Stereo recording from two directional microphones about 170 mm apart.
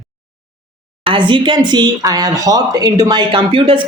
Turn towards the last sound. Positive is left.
turn(degrees=-30)  # may be behind; listen again after turning